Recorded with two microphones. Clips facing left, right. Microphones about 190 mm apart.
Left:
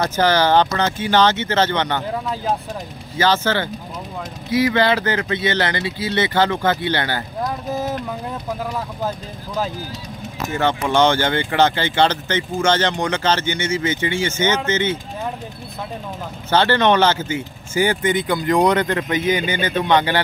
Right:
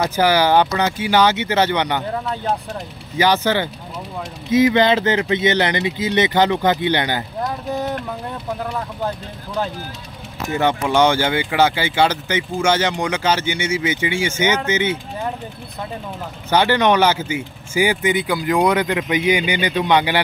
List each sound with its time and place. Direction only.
0.0 s speech: 10° right (ahead or behind)
2.1 s speech: centre (ahead or behind)
3.2 s speech: 15° right (ahead or behind)
7.4 s vehicle: centre (ahead or behind)
10.5 s speech: 15° right (ahead or behind)
16.4 s speech: 15° right (ahead or behind)